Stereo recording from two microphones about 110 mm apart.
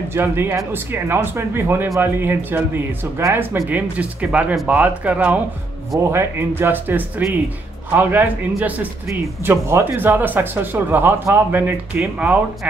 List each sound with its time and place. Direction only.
0.1 s a man's voice: 20° right (ahead or behind)
3.6 s a man's voice: 15° right (ahead or behind)